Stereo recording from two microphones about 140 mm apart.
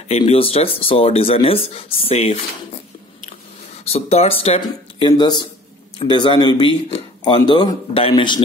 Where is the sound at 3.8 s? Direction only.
45° left (ahead or behind).